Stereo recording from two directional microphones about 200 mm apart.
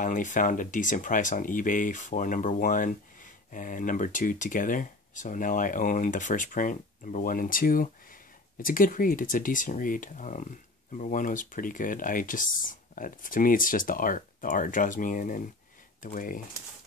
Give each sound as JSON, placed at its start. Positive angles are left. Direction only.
{"t": 0.0, "sound": "speech", "side_deg": 40}